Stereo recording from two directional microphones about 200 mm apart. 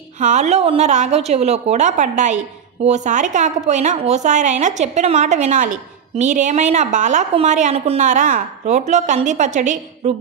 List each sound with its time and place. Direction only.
0.2 s a woman's voice: 35° right (ahead or behind)